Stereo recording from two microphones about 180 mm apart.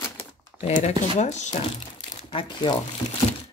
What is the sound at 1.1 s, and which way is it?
Speech, 40° left (ahead or behind).